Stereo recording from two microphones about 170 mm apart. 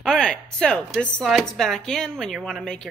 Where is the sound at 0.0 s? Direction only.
5° left (ahead or behind).